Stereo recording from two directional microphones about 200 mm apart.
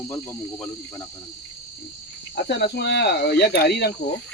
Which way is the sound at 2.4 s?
55° left (ahead or behind).